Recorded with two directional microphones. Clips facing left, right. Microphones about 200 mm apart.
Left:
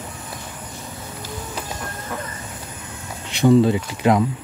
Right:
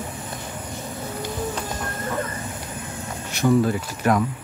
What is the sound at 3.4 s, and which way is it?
Speech, 20° left (ahead or behind).